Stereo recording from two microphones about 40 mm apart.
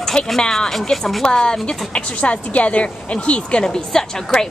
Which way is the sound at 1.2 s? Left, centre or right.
Centre.